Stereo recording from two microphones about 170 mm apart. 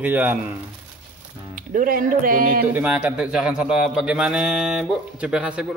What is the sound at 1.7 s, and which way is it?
Speech, 55° right (ahead or behind).